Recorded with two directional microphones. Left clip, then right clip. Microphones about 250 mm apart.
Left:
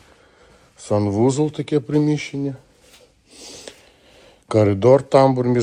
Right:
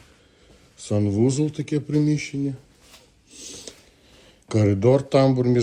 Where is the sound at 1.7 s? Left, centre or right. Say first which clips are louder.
Left 4 dB; left.